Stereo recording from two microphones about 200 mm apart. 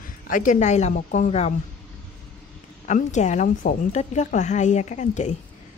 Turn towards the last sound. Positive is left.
turn(degrees=35)  # may be behind; listen again after turning